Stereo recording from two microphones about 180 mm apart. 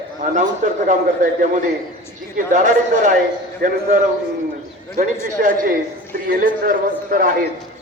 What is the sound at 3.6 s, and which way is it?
Speech, 55° right (ahead or behind).